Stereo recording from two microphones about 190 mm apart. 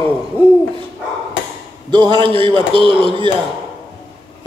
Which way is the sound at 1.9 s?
25° right (ahead or behind).